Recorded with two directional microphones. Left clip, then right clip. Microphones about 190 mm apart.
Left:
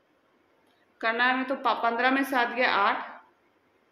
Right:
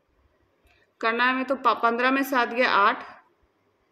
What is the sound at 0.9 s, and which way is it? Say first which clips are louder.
A woman's voice: right 2 dB; 45° right (ahead or behind).